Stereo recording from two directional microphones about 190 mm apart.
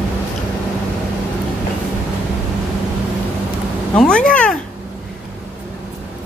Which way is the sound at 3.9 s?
5° left (ahead or behind).